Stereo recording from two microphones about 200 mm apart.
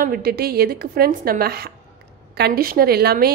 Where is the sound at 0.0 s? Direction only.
45° right (ahead or behind).